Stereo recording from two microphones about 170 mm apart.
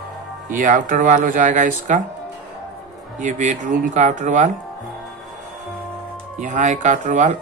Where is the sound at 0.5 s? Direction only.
50° right (ahead or behind).